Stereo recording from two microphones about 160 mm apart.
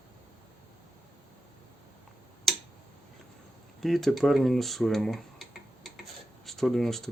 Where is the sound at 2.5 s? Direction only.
Centre (ahead or behind).